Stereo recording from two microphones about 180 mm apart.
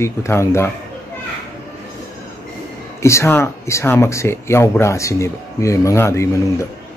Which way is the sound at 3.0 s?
15° left (ahead or behind).